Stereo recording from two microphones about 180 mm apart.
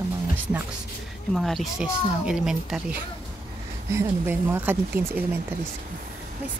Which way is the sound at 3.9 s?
15° right (ahead or behind).